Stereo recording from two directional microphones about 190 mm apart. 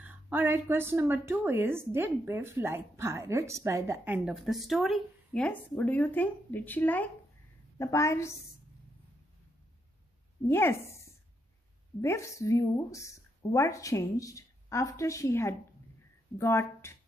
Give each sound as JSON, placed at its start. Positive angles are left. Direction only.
{"t": 0.0, "sound": "a woman's voice", "side_deg": -10}
{"t": 10.5, "sound": "a woman's voice", "side_deg": 10}
{"t": 12.0, "sound": "a woman's voice", "side_deg": 15}